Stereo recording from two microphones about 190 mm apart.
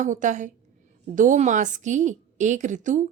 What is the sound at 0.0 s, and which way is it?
Speech, 40° right (ahead or behind).